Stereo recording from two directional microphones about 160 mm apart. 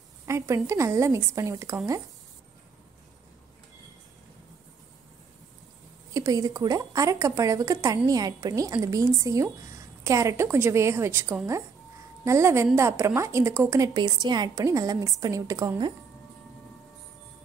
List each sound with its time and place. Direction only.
0.3 s a woman's voice: 20° right (ahead or behind)
6.1 s a woman's voice: 20° right (ahead or behind)